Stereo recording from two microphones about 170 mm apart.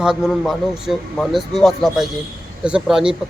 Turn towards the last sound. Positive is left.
turn(degrees=-5)  # may be behind; listen again after turning